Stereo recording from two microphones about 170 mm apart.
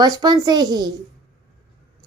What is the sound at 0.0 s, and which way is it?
Speech, 25° right (ahead or behind).